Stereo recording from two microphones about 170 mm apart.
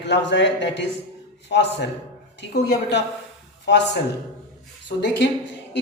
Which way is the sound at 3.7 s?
85° left.